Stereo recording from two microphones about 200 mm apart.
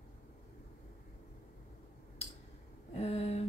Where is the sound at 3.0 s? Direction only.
30° left (ahead or behind).